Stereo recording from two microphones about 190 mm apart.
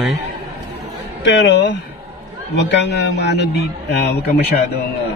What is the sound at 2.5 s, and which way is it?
Speech, 65° left (ahead or behind).